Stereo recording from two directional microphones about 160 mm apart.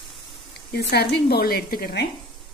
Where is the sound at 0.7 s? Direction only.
85° left; by 2.0 s 70° left (ahead or behind).